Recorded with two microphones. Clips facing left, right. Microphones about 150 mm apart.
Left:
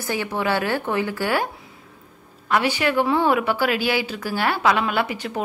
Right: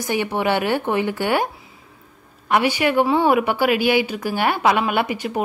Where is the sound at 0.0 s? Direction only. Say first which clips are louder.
Right 3 dB; 20° right (ahead or behind).